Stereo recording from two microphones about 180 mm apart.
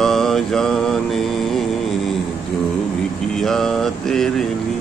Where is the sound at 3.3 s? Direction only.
Centre (ahead or behind).